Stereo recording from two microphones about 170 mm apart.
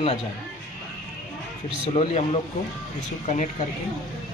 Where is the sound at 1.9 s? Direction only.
35° left (ahead or behind).